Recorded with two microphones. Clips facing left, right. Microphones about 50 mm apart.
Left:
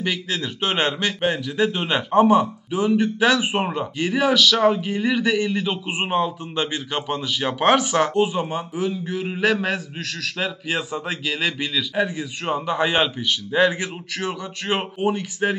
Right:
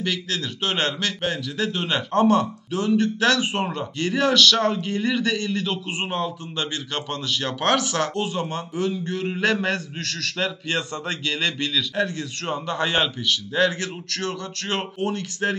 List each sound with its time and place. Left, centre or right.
0.0 s a man's voice: centre